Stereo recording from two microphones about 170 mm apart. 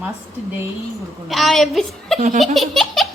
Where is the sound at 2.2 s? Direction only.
40° right (ahead or behind).